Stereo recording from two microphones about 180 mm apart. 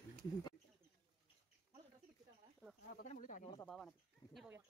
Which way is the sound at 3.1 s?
45° left (ahead or behind).